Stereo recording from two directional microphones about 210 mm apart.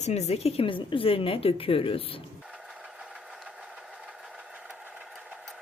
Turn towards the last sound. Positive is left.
turn(degrees=-5)  # may be behind; listen again after turning